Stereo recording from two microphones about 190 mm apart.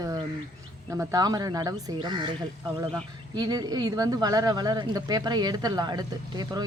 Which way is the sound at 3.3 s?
20° right (ahead or behind).